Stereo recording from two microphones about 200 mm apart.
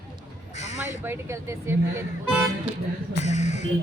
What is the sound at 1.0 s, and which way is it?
Speech, 10° right (ahead or behind).